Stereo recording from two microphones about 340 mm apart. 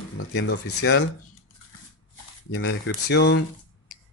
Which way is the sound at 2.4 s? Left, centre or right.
Left.